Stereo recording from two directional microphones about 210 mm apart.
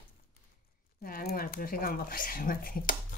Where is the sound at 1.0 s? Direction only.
45° left (ahead or behind).